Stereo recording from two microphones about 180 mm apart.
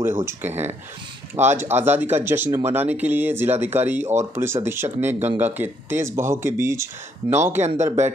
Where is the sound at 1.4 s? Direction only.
40° right (ahead or behind).